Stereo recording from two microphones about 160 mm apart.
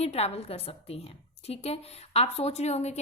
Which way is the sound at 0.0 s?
40° left (ahead or behind).